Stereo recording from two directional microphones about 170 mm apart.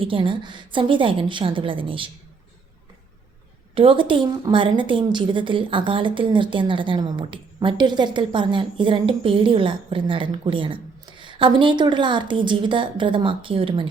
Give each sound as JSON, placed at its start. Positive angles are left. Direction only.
{"t": 0.0, "sound": "a woman's voice", "side_deg": -30}
{"t": 3.8, "sound": "a woman's voice", "side_deg": -30}